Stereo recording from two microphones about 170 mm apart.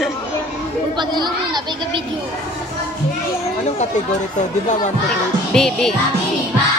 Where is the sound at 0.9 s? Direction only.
25° right (ahead or behind).